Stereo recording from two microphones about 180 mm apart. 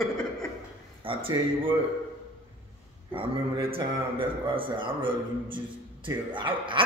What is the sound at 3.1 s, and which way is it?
A man's voice, 30° right (ahead or behind).